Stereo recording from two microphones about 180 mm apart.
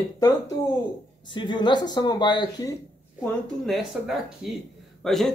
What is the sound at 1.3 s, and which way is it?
Speech, 25° left (ahead or behind).